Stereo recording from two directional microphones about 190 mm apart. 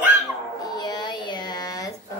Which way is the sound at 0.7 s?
20° left (ahead or behind).